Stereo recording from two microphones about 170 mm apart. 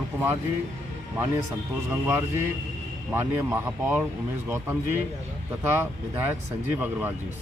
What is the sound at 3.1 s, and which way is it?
Speech, 10° right (ahead or behind).